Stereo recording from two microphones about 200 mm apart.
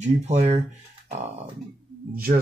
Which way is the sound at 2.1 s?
45° right (ahead or behind).